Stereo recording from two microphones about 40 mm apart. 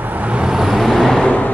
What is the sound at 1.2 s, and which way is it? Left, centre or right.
Vehicle, left.